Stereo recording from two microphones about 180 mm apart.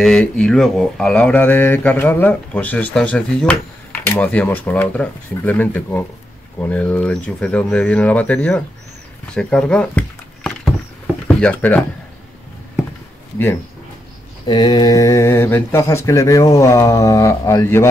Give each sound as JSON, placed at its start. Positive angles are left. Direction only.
{"t": 0.0, "sound": "speech", "side_deg": 5}
{"t": 9.3, "sound": "a sound", "side_deg": 5}
{"t": 11.2, "sound": "speech", "side_deg": 10}
{"t": 14.4, "sound": "speech", "side_deg": 25}